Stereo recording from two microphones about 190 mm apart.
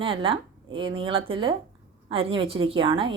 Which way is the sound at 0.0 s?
25° right (ahead or behind).